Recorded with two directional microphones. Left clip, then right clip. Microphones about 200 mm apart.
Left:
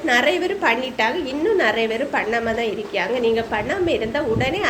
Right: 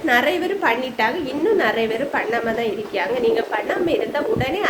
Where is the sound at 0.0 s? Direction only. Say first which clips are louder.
Even; 10° right (ahead or behind).